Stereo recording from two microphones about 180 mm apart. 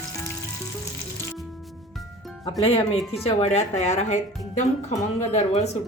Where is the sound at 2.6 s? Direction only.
30° left (ahead or behind).